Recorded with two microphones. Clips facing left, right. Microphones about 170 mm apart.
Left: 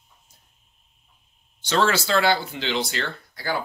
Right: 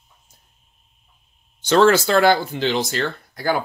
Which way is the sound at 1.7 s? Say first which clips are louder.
Right 7 dB; 50° right (ahead or behind).